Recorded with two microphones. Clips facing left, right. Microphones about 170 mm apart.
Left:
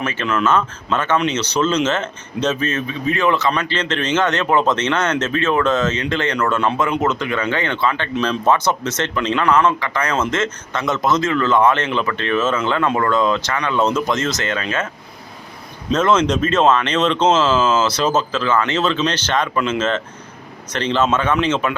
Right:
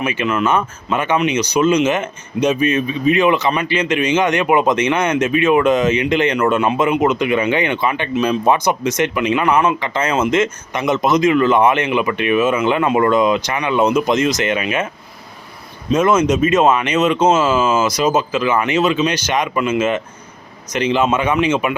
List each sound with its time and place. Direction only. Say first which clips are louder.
0.0 s speech: right 2 dB; 15° right (ahead or behind)
15.9 s speech: right 2 dB; 10° right (ahead or behind)